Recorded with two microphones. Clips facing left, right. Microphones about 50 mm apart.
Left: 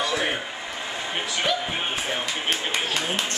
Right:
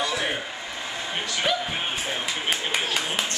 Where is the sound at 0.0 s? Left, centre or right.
Centre.